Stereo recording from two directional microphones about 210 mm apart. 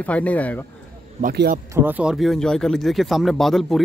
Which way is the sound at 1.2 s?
45° right (ahead or behind).